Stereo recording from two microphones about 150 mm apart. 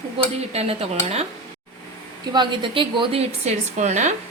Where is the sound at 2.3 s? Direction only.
30° right (ahead or behind); by 4.1 s 50° right (ahead or behind).